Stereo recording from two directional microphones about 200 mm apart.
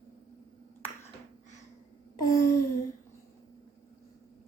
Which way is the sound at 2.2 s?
15° left (ahead or behind).